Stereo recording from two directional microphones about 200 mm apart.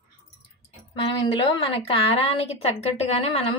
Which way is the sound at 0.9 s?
25° left (ahead or behind).